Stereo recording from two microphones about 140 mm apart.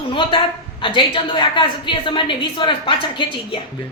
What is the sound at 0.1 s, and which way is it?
A woman's voice, 35° left (ahead or behind).